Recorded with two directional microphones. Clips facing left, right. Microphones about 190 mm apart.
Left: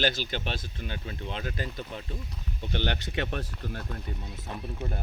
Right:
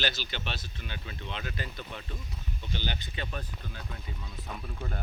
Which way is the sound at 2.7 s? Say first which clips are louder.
Left 7 dB; 65° left (ahead or behind).